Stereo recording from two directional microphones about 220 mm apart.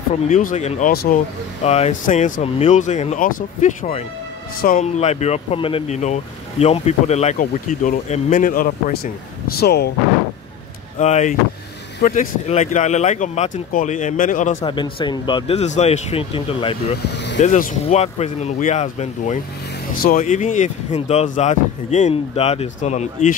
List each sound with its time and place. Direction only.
0.3 s speech: 35° left (ahead or behind)
11.0 s speech: 30° left (ahead or behind)
14.6 s speech: 20° left (ahead or behind)
17.0 s vehicle: 50° left (ahead or behind)
17.4 s speech: 35° left (ahead or behind)